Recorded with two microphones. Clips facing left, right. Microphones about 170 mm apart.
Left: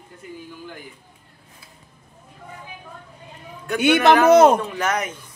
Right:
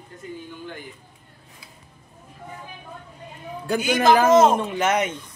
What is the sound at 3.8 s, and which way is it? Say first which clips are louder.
Speech: left 3 dB; 70° left (ahead or behind).